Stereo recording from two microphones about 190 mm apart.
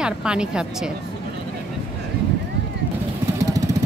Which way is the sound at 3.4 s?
15° right (ahead or behind).